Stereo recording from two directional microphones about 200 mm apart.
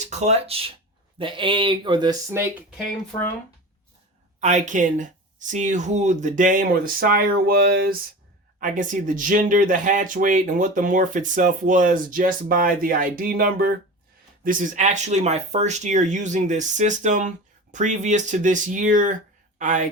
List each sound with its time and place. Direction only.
0.0 s speech: 35° right (ahead or behind); by 2.7 s 10° right (ahead or behind)
4.4 s speech: 35° right (ahead or behind)